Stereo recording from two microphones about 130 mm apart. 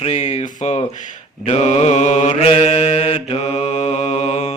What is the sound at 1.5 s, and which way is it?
Mantra, 55° left (ahead or behind).